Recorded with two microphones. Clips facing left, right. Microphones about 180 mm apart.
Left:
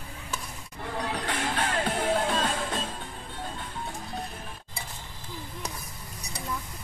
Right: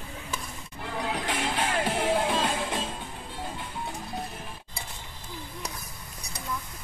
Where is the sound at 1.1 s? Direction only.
15° right (ahead or behind).